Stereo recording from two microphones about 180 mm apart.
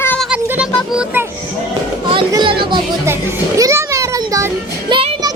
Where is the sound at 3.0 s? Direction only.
15° right (ahead or behind).